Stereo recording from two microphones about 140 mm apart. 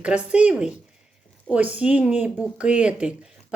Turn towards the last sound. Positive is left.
turn(degrees=-5)  # may be behind; listen again after turning